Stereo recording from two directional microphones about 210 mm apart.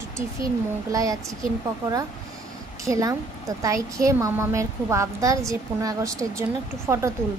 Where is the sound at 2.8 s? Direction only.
15° right (ahead or behind).